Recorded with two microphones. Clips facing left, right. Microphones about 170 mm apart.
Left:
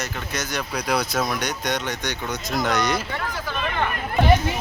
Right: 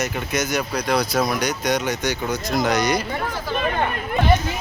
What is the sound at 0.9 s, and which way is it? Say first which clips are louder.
Speech: right 3 dB; centre (ahead or behind).